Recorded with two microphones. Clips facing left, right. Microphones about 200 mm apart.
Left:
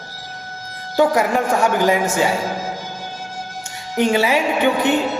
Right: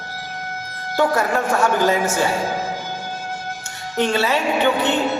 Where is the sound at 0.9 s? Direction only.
15° left (ahead or behind).